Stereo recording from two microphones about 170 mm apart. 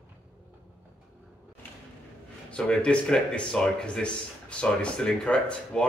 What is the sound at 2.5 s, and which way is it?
Speech, 5° left (ahead or behind).